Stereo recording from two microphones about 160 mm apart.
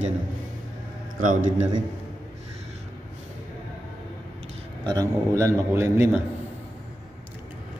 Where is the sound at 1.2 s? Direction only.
55° right (ahead or behind).